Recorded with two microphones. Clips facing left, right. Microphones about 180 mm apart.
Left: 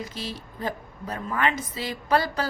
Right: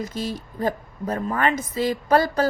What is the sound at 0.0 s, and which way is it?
A woman's voice, 45° right (ahead or behind).